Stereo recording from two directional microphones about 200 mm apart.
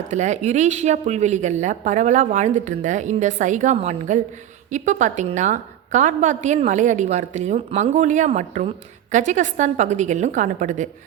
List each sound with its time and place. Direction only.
0.1 s a woman's voice: 35° right (ahead or behind)